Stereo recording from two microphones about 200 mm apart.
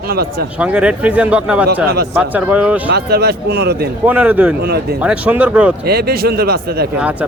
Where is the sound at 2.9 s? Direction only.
55° right (ahead or behind).